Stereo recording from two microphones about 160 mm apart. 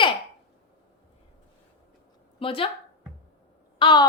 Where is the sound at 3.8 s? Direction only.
30° left (ahead or behind).